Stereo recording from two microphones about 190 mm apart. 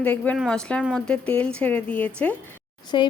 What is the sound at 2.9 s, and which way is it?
Speech, 25° left (ahead or behind).